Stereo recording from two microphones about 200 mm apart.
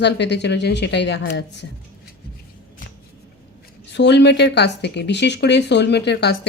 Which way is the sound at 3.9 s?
60° left (ahead or behind).